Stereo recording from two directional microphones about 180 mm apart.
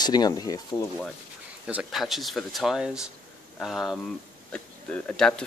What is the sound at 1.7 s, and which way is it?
Speech, 5° right (ahead or behind).